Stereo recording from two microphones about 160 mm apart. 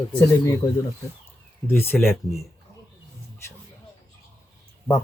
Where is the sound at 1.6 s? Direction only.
15° left (ahead or behind).